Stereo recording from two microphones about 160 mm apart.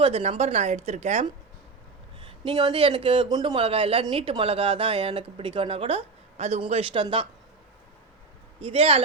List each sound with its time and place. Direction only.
0.0 s a woman's voice: 40° right (ahead or behind)
8.6 s speech: 35° right (ahead or behind)